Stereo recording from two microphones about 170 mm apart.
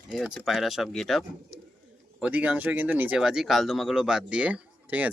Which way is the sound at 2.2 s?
10° right (ahead or behind).